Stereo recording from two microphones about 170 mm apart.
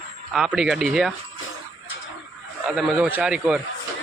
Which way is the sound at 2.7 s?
5° right (ahead or behind).